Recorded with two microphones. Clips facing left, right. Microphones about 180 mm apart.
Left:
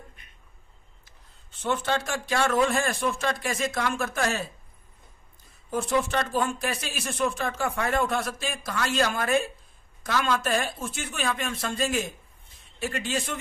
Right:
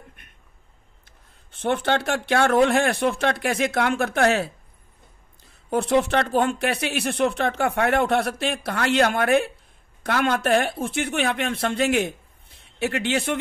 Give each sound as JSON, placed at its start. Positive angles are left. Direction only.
{"t": 1.5, "sound": "speech", "side_deg": -60}
{"t": 5.7, "sound": "speech", "side_deg": -65}